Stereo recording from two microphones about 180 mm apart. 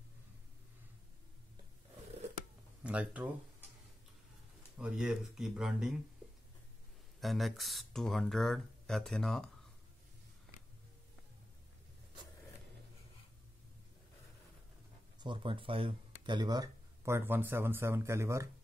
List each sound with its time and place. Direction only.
2.8 s speech: 10° right (ahead or behind)
4.7 s speech: 5° right (ahead or behind)
7.2 s speech: centre (ahead or behind)
15.1 s speech: 25° right (ahead or behind)